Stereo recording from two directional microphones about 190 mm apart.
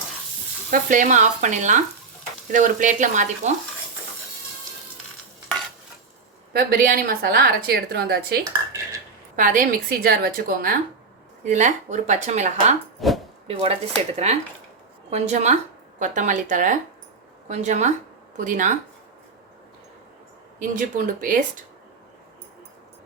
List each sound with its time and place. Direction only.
0.7 s speech: 45° right (ahead or behind)
6.7 s a woman's voice: 50° right (ahead or behind)
13.0 s speech: centre (ahead or behind)
13.5 s speech: 30° right (ahead or behind)
20.6 s a woman's voice: 45° right (ahead or behind)